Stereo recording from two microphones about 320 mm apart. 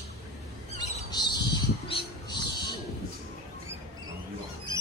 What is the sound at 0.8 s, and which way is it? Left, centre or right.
Squawk, centre.